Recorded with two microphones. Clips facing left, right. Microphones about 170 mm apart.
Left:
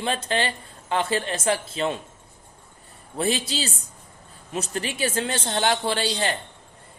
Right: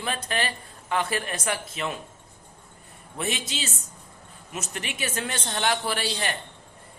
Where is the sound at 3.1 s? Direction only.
35° left (ahead or behind).